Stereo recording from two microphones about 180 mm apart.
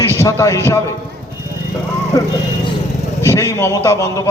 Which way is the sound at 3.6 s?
15° left (ahead or behind).